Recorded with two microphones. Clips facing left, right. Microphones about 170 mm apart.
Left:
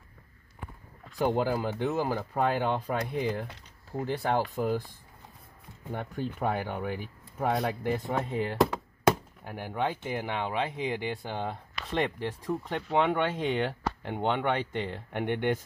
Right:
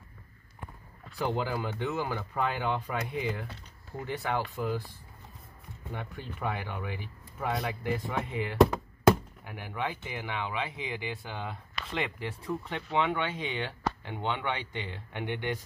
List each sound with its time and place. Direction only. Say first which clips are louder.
1.1 s speech: left 4 dB; 45° left (ahead or behind)
5.9 s speech: left 6 dB; 45° left (ahead or behind)
8.5 s a sound: right 7 dB; centre (ahead or behind)
9.4 s speech: left 4 dB; 45° left (ahead or behind)